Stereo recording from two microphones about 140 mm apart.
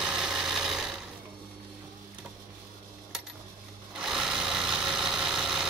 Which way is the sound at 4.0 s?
5° right (ahead or behind).